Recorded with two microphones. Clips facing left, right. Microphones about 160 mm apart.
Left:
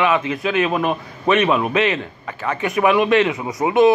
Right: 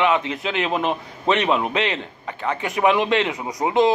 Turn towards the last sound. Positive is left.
turn(degrees=-20)  # may be behind; listen again after turning